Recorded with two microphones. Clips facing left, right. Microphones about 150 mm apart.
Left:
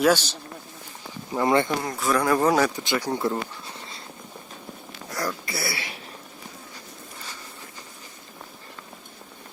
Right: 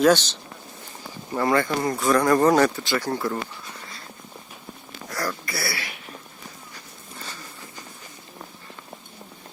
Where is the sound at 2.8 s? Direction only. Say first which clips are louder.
Even; 15° left (ahead or behind).